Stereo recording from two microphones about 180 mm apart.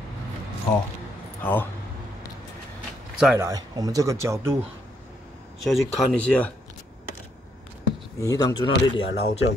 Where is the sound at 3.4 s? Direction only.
20° right (ahead or behind).